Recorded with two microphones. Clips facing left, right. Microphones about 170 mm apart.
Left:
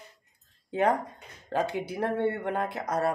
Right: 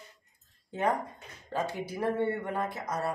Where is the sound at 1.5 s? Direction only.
65° left (ahead or behind).